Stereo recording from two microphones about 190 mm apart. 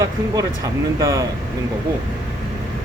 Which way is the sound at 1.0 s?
15° right (ahead or behind).